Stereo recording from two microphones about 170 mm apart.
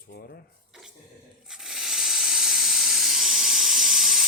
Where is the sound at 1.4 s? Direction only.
5° right (ahead or behind).